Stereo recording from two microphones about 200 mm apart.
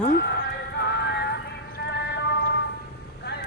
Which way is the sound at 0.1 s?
55° left (ahead or behind).